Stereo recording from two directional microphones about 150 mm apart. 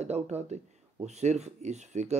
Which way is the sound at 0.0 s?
45° right (ahead or behind).